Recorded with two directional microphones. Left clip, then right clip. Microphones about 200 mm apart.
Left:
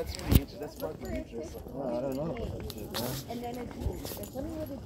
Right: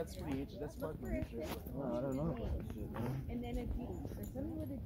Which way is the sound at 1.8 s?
15° left (ahead or behind).